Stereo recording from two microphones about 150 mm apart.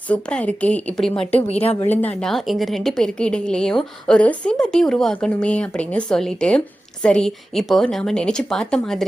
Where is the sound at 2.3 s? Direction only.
Centre (ahead or behind).